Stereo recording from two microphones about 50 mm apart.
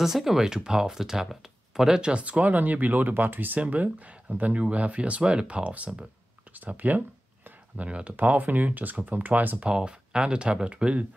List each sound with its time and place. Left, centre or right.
0.0 s speech: centre
2.0 s speech: right
9.6 s speech: centre